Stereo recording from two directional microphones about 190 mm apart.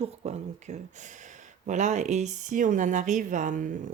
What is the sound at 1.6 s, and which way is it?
Speech, 40° right (ahead or behind).